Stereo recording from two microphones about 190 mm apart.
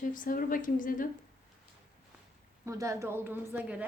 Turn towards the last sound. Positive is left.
turn(degrees=-10)  # may be behind; listen again after turning